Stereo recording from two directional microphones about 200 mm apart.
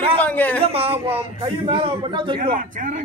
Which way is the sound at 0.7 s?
30° right (ahead or behind).